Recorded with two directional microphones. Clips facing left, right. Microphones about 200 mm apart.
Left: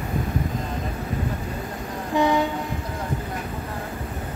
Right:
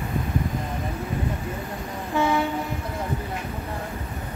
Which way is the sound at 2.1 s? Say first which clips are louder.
Left 2 dB; 15° left (ahead or behind).